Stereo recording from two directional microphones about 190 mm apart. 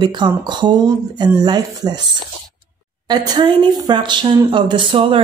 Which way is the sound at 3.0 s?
20° right (ahead or behind).